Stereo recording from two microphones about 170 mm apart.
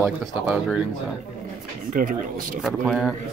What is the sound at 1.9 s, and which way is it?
Speech, 55° right (ahead or behind).